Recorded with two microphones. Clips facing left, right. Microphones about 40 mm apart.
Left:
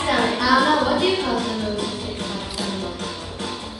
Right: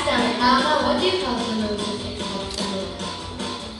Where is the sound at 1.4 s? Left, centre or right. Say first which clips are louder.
Even; left.